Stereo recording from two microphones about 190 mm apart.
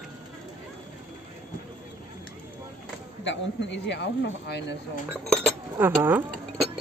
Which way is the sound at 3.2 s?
70° left (ahead or behind).